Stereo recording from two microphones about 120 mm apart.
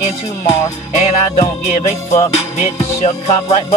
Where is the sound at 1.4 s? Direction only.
80° left.